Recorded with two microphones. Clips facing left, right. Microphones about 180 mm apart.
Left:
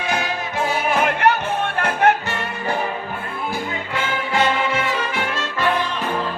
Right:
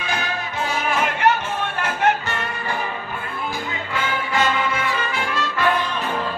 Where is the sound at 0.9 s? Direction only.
55° left (ahead or behind).